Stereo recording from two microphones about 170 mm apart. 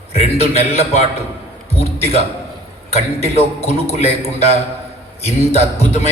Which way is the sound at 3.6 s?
40° left (ahead or behind).